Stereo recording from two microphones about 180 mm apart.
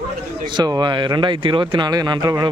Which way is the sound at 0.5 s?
25° right (ahead or behind).